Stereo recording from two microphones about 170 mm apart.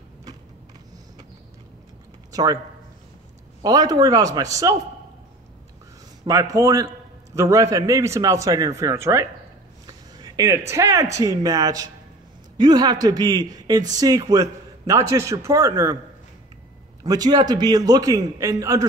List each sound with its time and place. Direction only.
2.3 s speech: 20° right (ahead or behind)
3.6 s a man's voice: 20° right (ahead or behind)
6.2 s a man's voice: 20° right (ahead or behind)
17.0 s a man's voice: 20° right (ahead or behind)